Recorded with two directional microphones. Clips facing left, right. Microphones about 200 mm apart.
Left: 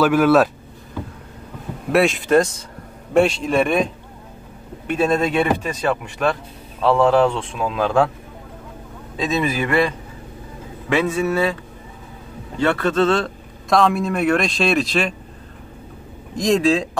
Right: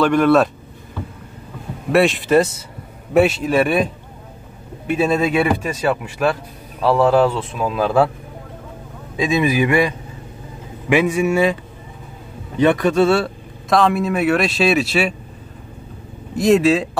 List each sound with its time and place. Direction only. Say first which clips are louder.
0.0 s speech: even; 5° left (ahead or behind)
1.9 s a man's voice: right 1 dB; centre (ahead or behind)
9.1 s a man's voice: right 4 dB; 10° right (ahead or behind)
12.5 s a man's voice: right 4 dB; 15° right (ahead or behind)
16.3 s speech: right 3 dB; 5° right (ahead or behind)